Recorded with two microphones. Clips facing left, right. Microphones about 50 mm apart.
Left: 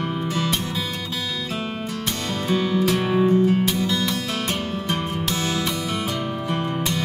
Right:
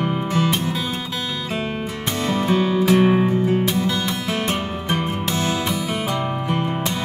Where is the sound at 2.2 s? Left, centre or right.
Right.